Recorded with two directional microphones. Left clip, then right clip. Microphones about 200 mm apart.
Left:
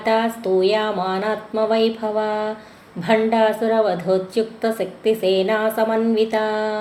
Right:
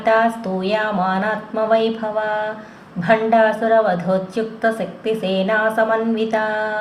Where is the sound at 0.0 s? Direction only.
45° left (ahead or behind).